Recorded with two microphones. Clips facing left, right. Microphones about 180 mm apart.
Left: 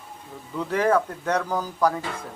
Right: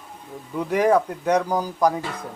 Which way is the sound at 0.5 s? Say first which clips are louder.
Right 3 dB; 15° right (ahead or behind).